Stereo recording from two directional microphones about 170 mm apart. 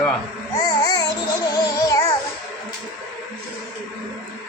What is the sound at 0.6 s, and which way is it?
Babbling, 20° left (ahead or behind).